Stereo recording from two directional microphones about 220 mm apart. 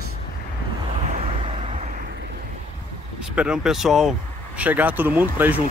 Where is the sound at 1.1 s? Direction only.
25° right (ahead or behind).